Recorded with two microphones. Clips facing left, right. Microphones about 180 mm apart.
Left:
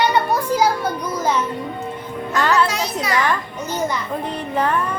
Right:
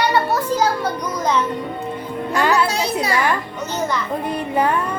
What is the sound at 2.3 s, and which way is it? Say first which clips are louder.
Music: even; 15° right (ahead or behind).